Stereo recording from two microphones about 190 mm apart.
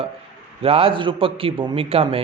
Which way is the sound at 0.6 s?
30° right (ahead or behind).